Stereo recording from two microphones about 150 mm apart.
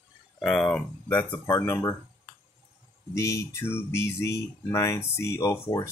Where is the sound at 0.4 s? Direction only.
5° left (ahead or behind).